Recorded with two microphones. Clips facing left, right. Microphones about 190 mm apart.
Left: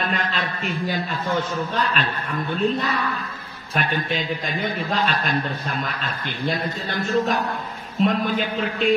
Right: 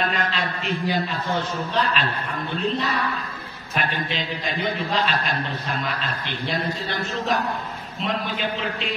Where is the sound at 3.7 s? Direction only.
45° left (ahead or behind).